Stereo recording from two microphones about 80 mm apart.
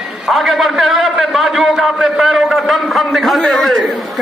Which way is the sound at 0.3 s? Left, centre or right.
Centre.